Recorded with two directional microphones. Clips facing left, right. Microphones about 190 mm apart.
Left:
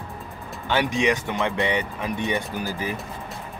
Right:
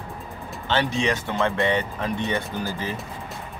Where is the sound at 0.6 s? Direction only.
15° left (ahead or behind).